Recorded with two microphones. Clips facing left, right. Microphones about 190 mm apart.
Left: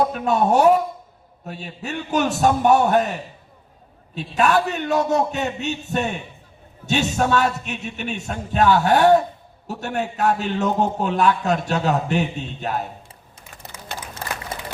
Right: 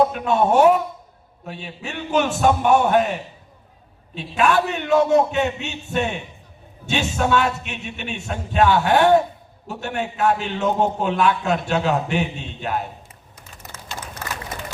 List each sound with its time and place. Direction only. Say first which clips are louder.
0.1 s a man's voice: even; 40° left (ahead or behind)
4.1 s a man's voice: even; 40° left (ahead or behind)
14.2 s a sound: left 2 dB; 30° left (ahead or behind)